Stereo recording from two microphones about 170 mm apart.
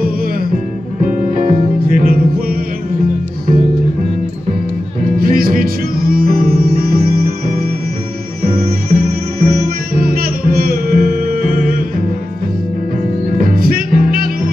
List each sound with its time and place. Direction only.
1.0 s music: 55° right (ahead or behind)
5.2 s music: 55° right (ahead or behind)
8.5 s music: 60° right (ahead or behind)
13.4 s music: 55° right (ahead or behind)